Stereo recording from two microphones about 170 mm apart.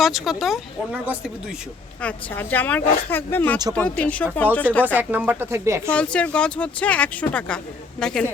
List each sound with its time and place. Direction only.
0.0 s speech: centre (ahead or behind)
2.0 s speech: 10° left (ahead or behind)
4.9 s speech: 10° right (ahead or behind)
5.9 s speech: 5° left (ahead or behind)